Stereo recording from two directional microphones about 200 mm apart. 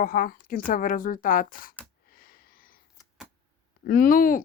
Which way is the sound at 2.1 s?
45° left (ahead or behind).